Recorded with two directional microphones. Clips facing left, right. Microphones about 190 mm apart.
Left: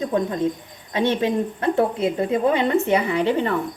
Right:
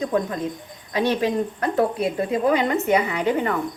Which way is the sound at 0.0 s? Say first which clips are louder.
Left 2 dB; 30° left (ahead or behind).